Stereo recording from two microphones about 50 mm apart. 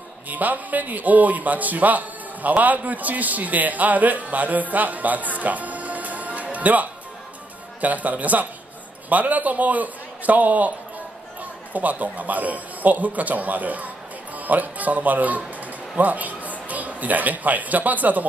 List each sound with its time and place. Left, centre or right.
0.3 s a man's voice: right
11.7 s a man's voice: right